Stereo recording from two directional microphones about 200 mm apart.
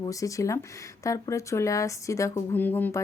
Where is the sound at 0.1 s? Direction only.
15° left (ahead or behind).